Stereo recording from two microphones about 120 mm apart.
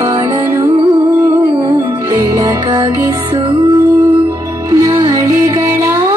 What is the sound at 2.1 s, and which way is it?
Music, 25° right (ahead or behind).